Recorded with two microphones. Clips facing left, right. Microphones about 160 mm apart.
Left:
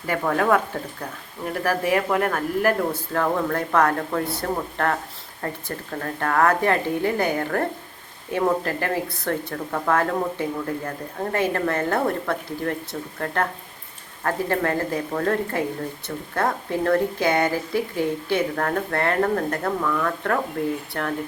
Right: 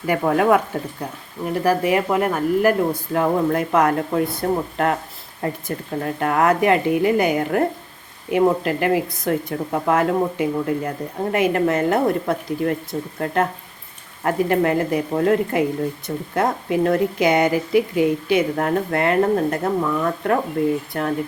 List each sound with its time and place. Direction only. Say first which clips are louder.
0.0 s speech: right 4 dB; 10° right (ahead or behind)
1.6 s speech: right 3 dB; 15° right (ahead or behind)